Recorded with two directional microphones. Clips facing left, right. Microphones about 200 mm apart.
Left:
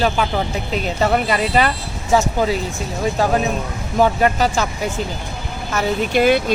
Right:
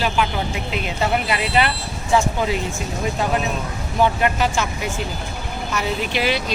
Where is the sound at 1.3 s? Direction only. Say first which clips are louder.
Left 3 dB; 40° left (ahead or behind).